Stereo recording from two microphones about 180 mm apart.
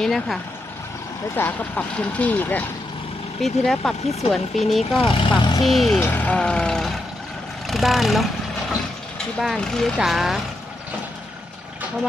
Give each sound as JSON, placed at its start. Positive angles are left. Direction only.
{"t": 0.0, "sound": "speech", "side_deg": 0}
{"t": 5.0, "sound": "speech", "side_deg": 30}
{"t": 5.6, "sound": "speech", "side_deg": 0}
{"t": 5.9, "sound": "speech", "side_deg": 10}
{"t": 9.4, "sound": "speech", "side_deg": 0}